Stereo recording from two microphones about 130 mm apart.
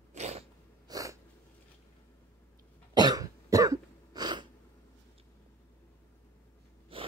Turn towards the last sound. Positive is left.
turn(degrees=-45)  # may be behind; listen again after turning